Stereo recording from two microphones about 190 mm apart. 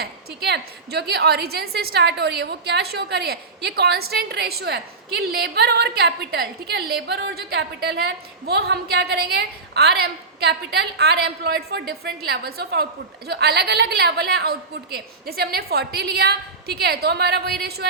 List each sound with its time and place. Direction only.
0.0 s a woman's voice: 55° right (ahead or behind)